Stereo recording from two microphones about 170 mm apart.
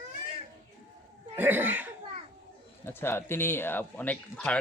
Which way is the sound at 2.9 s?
15° left (ahead or behind).